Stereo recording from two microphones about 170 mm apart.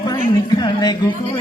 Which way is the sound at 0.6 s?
25° left (ahead or behind).